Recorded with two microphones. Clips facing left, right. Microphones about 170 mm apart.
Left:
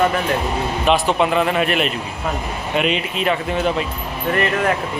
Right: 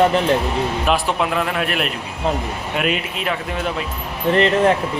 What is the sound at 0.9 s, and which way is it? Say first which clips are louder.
Speech: left 5 dB; centre (ahead or behind).